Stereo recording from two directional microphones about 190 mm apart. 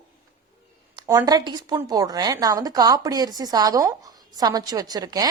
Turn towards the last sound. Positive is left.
turn(degrees=-20)  # may be behind; listen again after turning